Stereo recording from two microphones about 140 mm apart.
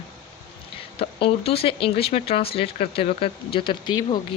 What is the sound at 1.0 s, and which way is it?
Speech, 45° left (ahead or behind).